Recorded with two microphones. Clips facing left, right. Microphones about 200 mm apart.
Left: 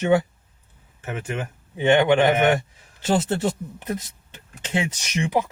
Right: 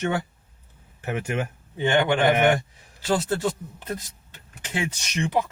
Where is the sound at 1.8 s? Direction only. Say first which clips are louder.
Left 4 dB; 20° left (ahead or behind).